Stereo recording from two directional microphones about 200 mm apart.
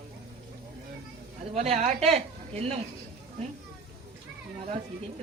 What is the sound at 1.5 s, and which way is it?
Speech, 30° right (ahead or behind).